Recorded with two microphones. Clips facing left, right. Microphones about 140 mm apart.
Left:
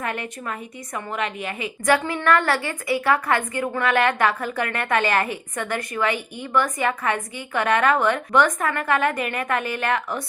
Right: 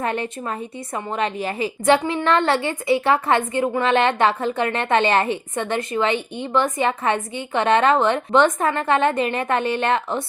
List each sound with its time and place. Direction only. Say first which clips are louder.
0.0 s a woman's voice: right 4 dB; 30° right (ahead or behind)